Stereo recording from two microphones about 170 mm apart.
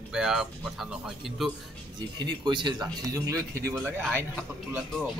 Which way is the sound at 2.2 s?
25° right (ahead or behind).